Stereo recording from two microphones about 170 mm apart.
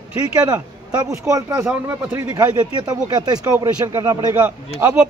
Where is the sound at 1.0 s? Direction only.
20° right (ahead or behind).